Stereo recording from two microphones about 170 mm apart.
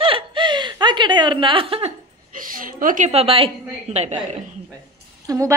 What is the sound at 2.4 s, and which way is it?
A woman's voice, 55° right (ahead or behind).